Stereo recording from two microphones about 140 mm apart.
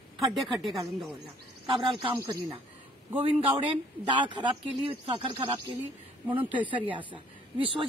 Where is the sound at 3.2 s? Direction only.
40° right (ahead or behind).